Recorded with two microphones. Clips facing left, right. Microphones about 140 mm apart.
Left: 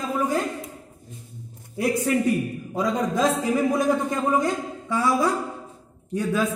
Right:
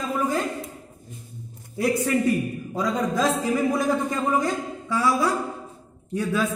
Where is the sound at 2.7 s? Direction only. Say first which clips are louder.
Left 1 dB; 20° left (ahead or behind).